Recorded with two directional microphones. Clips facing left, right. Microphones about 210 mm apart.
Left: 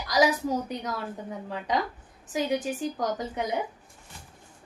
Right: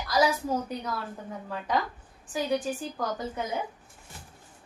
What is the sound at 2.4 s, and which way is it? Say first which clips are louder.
A woman's voice: even; 20° left (ahead or behind).